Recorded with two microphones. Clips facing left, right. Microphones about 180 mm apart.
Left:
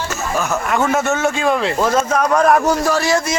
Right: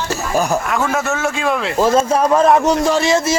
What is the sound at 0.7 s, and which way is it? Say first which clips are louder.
A man's voice: left 2 dB; centre (ahead or behind).